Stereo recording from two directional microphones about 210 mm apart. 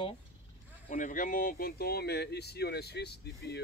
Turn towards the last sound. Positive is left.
turn(degrees=50)  # may be behind; listen again after turning